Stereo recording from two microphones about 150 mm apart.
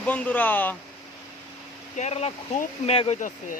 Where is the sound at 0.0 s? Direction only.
10° left (ahead or behind).